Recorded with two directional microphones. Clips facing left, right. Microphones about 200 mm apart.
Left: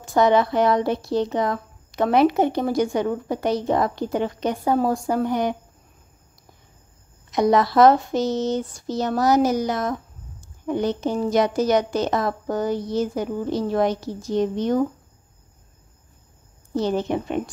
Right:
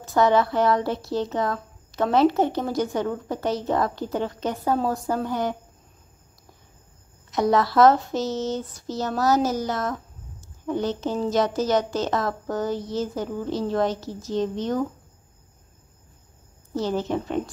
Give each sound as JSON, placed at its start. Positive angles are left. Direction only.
{"t": 0.0, "sound": "speech", "side_deg": 15}
{"t": 7.2, "sound": "speech", "side_deg": 15}
{"t": 16.7, "sound": "speech", "side_deg": 15}